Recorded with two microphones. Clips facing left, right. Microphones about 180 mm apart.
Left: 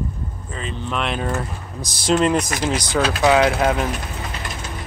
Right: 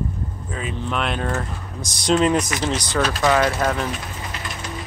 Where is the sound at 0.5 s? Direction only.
5° right (ahead or behind).